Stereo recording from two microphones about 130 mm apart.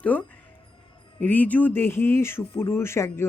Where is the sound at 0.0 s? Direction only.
10° left (ahead or behind).